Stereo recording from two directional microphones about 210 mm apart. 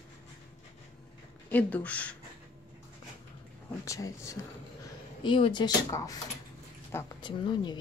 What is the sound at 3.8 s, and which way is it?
Speech, 15° left (ahead or behind).